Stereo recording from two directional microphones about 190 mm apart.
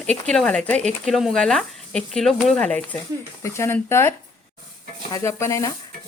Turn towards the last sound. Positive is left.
turn(degrees=15)  # may be behind; listen again after turning